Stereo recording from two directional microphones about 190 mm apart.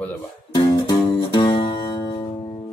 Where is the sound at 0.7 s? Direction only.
20° left (ahead or behind).